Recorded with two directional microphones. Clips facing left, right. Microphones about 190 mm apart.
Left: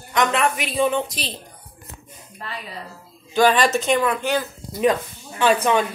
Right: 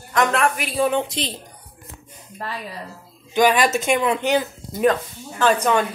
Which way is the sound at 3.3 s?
10° right (ahead or behind).